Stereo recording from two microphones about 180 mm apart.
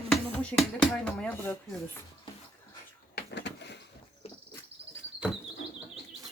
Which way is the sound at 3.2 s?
70° left (ahead or behind).